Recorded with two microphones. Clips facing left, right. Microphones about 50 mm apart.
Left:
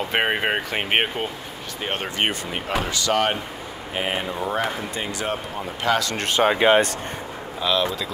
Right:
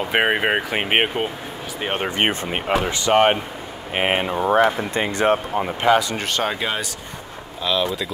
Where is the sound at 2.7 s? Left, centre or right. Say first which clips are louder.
Right 5 dB; right.